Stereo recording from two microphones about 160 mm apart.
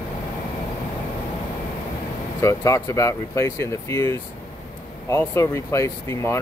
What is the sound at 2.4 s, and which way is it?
Speech, 20° left (ahead or behind).